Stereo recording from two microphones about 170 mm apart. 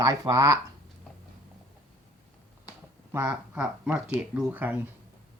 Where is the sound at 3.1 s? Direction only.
15° right (ahead or behind).